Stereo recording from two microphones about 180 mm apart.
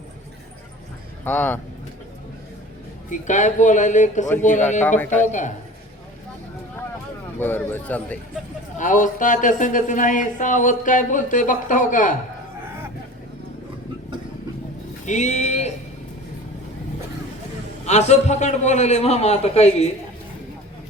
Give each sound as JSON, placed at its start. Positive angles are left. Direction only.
{"t": 1.2, "sound": "a man's voice", "side_deg": 10}
{"t": 3.1, "sound": "speech", "side_deg": 45}
{"t": 7.3, "sound": "a man's voice", "side_deg": 10}
{"t": 8.8, "sound": "speech", "side_deg": 45}
{"t": 15.0, "sound": "a man's voice", "side_deg": 40}
{"t": 17.8, "sound": "a man's voice", "side_deg": 40}